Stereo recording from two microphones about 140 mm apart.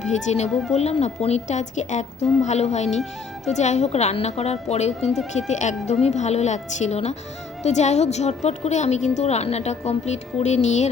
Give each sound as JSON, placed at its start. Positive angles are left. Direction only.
{"t": 0.0, "sound": "a woman's voice", "side_deg": 55}